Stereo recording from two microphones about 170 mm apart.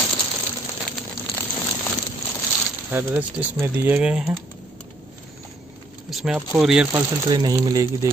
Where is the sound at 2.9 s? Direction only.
10° right (ahead or behind).